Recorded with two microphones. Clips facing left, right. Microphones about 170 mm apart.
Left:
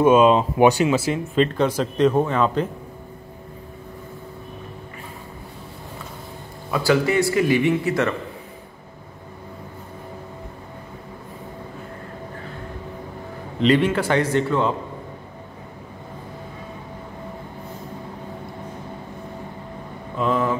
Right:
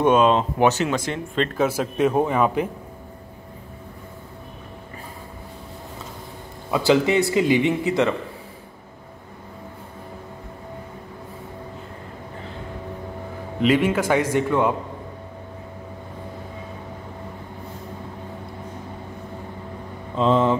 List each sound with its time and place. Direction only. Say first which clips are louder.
0.0 s speech: left 3 dB; 5° left (ahead or behind); by 2.7 s 10° right (ahead or behind)
6.7 s a man's voice: right 1 dB; 20° right (ahead or behind)
13.6 s a man's voice: left 1 dB; 10° right (ahead or behind)
20.2 s speech: right 3 dB; 25° right (ahead or behind)